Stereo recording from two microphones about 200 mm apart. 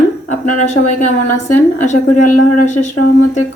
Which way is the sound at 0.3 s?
40° left (ahead or behind).